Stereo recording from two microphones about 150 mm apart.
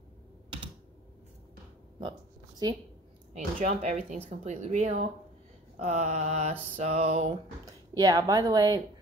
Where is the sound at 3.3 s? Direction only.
55° right (ahead or behind).